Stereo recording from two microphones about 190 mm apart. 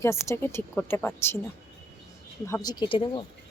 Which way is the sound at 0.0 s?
15° left (ahead or behind).